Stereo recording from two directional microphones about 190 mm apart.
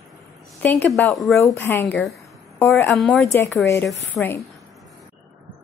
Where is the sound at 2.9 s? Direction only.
Centre (ahead or behind).